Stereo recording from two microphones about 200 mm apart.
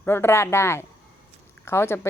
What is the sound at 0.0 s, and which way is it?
Speech, 10° left (ahead or behind).